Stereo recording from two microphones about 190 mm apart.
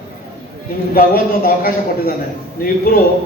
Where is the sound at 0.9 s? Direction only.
50° left (ahead or behind).